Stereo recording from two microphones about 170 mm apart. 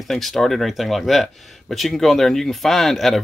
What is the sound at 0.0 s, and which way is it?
Speech, centre (ahead or behind).